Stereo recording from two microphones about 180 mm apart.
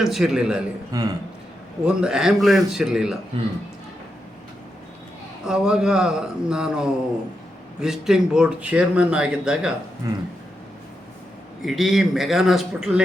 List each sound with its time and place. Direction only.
0.0 s speech: centre (ahead or behind)
0.9 s speech: 20° right (ahead or behind)
1.8 s speech: 5° right (ahead or behind)
5.5 s speech: 5° right (ahead or behind)
10.0 s speech: 20° right (ahead or behind)
11.6 s speech: centre (ahead or behind)